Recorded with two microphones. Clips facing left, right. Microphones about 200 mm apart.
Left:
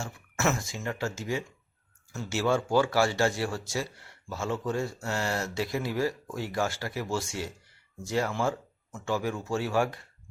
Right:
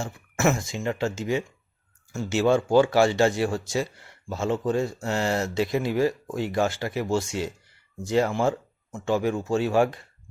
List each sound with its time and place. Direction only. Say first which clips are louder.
0.0 s speech: right 5 dB; 15° right (ahead or behind)